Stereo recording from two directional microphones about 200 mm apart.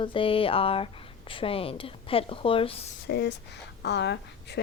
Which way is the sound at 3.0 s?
55° left (ahead or behind).